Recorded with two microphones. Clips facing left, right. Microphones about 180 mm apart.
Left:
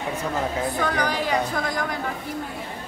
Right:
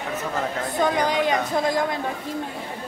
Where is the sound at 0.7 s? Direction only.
20° right (ahead or behind).